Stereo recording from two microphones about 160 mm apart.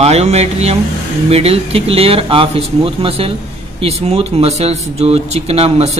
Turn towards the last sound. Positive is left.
turn(degrees=-40)  # may be behind; listen again after turning